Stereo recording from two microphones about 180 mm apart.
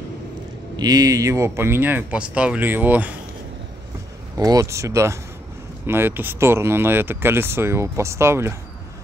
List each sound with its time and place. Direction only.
0.7 s speech: 20° right (ahead or behind)
4.4 s speech: 20° right (ahead or behind)